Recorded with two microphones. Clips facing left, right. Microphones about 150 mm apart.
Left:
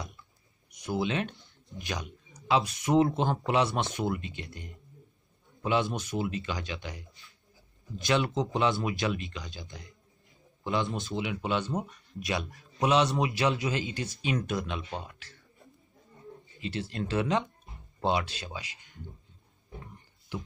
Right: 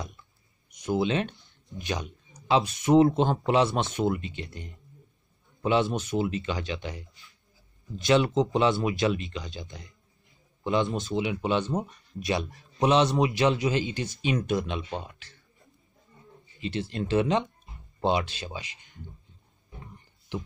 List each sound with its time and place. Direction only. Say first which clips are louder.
0.7 s speech: right 4 dB; 20° right (ahead or behind)
8.1 s speech: right 5 dB; 25° right (ahead or behind)
16.6 s speech: right 3 dB; 20° right (ahead or behind)